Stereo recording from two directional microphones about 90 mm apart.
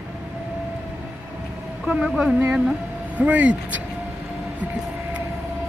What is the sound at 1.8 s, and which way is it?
Speech, 10° right (ahead or behind).